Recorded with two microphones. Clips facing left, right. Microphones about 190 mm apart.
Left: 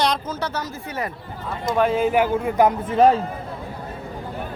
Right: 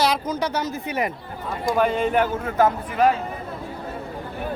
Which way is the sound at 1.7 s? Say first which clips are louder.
Left 2 dB; centre (ahead or behind).